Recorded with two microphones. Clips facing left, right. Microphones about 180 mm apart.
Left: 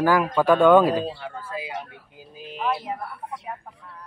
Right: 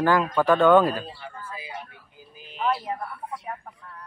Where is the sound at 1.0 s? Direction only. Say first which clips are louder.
Left 7 dB; 85° left.